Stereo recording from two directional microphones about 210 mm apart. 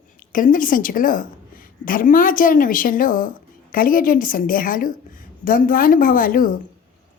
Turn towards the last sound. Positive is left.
turn(degrees=40)  # may be behind; listen again after turning